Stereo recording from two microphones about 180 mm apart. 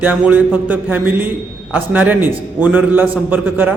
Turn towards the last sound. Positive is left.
turn(degrees=-10)  # may be behind; listen again after turning